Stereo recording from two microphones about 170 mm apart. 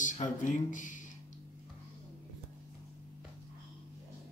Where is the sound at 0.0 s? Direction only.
50° left (ahead or behind).